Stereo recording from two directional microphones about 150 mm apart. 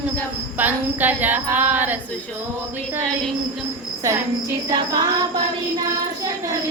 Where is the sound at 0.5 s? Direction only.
10° right (ahead or behind).